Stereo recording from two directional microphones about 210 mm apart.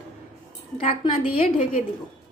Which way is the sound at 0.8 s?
25° left (ahead or behind).